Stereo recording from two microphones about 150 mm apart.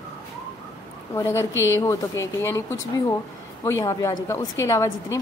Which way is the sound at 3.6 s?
20° left (ahead or behind).